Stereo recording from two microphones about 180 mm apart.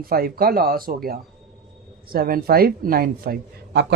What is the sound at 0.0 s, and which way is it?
A woman's voice, 55° right (ahead or behind).